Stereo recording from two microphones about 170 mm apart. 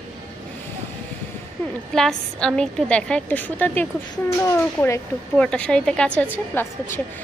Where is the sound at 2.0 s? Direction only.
5° left (ahead or behind).